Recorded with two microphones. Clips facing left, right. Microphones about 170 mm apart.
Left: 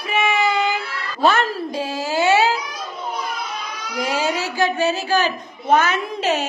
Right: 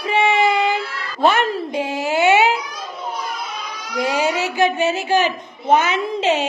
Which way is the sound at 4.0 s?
20° right (ahead or behind).